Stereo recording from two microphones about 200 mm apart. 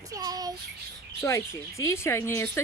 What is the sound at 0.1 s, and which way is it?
Child singing, 20° right (ahead or behind).